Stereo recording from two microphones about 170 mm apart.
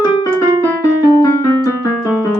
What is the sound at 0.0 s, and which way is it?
Keyboard, 25° left (ahead or behind).